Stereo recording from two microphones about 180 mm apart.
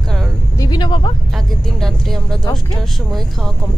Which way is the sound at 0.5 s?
25° left (ahead or behind).